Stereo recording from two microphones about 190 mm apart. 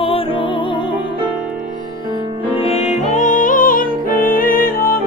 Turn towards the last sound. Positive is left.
turn(degrees=50)  # may be behind; listen again after turning